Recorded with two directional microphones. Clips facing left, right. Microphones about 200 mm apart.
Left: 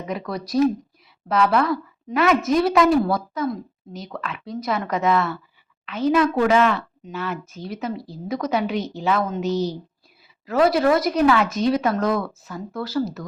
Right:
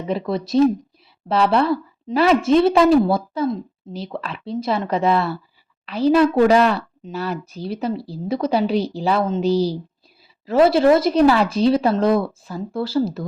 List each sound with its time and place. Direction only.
0.1 s a woman's voice: 25° right (ahead or behind)